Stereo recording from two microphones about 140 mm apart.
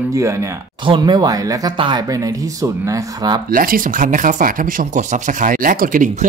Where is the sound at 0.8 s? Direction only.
35° right (ahead or behind).